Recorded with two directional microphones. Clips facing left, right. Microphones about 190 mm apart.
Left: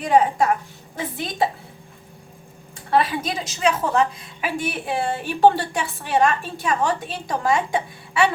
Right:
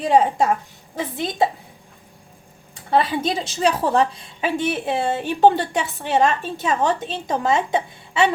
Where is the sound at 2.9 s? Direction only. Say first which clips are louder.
Right 1 dB; 30° right (ahead or behind).